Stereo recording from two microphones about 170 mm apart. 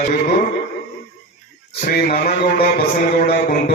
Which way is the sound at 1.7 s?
60° left (ahead or behind).